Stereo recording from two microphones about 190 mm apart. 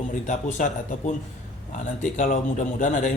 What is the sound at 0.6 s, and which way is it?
Speech, 45° left (ahead or behind).